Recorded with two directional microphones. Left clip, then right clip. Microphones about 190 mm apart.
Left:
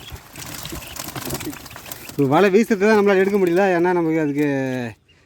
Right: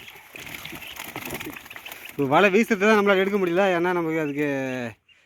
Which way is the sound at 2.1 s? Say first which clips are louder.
Left 3 dB; 10° left (ahead or behind).